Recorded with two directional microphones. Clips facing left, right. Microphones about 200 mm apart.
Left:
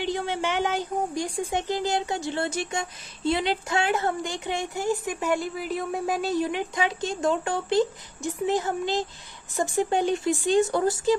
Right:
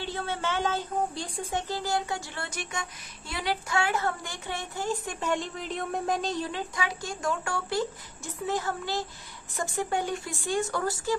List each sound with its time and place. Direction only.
0.0 s speech: 15° left (ahead or behind)